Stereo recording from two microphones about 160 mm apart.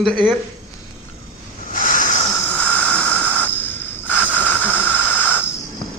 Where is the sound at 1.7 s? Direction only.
55° left (ahead or behind).